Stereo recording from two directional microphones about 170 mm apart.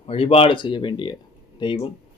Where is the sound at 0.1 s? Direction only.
35° left (ahead or behind).